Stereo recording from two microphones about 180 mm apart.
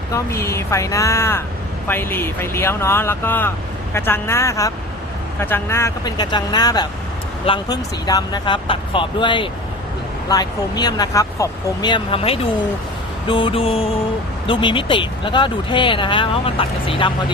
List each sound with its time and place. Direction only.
0.1 s speech: 15° left (ahead or behind); by 12.4 s 30° left (ahead or behind)
13.2 s mantra: 25° left (ahead or behind)
14.4 s speech: 25° left (ahead or behind)